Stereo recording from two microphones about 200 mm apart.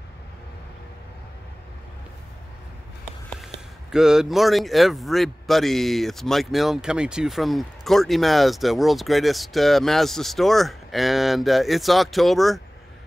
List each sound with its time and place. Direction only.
3.9 s a man's voice: 5° right (ahead or behind)